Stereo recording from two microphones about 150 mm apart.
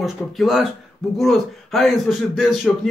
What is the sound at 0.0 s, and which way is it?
Speech, centre (ahead or behind).